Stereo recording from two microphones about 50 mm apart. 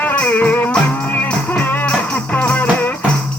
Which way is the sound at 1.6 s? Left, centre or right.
Left.